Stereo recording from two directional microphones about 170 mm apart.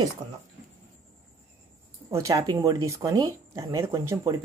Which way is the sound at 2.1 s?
20° right (ahead or behind).